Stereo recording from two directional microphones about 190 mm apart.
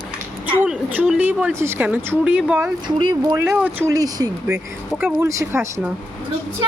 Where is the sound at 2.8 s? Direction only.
25° right (ahead or behind).